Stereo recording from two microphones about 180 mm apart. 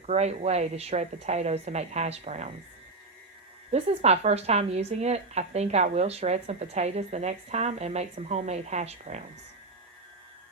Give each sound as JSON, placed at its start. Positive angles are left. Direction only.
{"t": 0.0, "sound": "a woman's voice", "side_deg": -35}
{"t": 3.7, "sound": "a woman's voice", "side_deg": -40}